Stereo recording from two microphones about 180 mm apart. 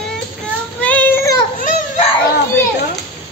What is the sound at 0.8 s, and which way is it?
Child singing, 10° left (ahead or behind).